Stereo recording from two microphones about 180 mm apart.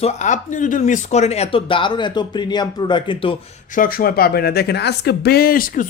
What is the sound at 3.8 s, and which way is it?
Speech, 55° left (ahead or behind).